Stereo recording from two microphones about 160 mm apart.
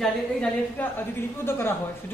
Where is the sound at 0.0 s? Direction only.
10° left (ahead or behind).